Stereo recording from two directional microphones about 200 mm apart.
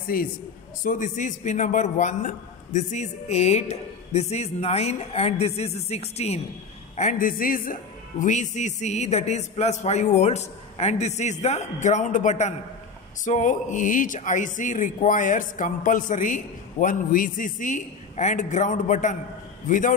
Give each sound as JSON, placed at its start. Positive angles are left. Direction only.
{"t": 0.1, "sound": "a man's voice", "side_deg": 50}